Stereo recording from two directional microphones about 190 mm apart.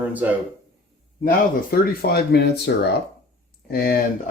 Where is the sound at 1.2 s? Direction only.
50° left (ahead or behind).